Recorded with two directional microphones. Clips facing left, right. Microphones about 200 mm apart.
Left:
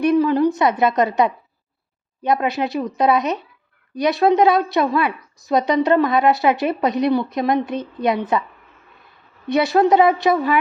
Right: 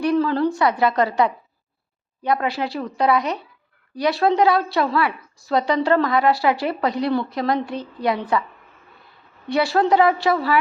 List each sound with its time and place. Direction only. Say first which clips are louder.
0.0 s a woman's voice: left 3 dB; 20° left (ahead or behind)
9.5 s a woman's voice: left 3 dB; 20° left (ahead or behind)